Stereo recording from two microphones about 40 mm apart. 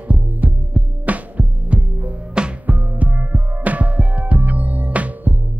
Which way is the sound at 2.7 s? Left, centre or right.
Right.